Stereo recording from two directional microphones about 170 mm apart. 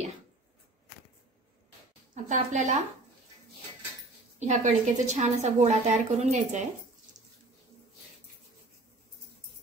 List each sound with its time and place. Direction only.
2.2 s a woman's voice: 45° right (ahead or behind)
4.4 s a woman's voice: 45° right (ahead or behind)